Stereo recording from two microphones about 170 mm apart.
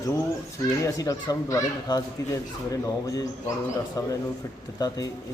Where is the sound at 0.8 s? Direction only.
20° left (ahead or behind).